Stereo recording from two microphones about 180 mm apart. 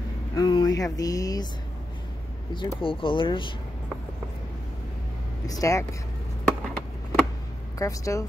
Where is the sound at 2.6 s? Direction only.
30° left (ahead or behind).